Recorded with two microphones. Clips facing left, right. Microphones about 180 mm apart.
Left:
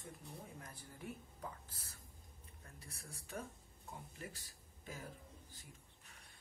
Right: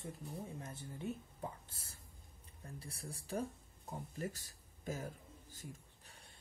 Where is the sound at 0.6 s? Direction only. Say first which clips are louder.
Right 7 dB; 25° right (ahead or behind).